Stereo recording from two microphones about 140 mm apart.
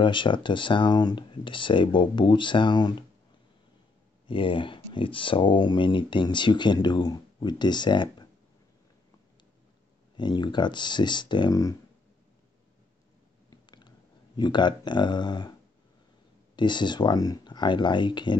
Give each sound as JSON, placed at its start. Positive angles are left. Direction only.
{"t": 0.0, "sound": "speech", "side_deg": 35}
{"t": 4.3, "sound": "speech", "side_deg": 40}
{"t": 10.1, "sound": "speech", "side_deg": 30}
{"t": 13.5, "sound": "clicking", "side_deg": 35}
{"t": 16.5, "sound": "speech", "side_deg": 35}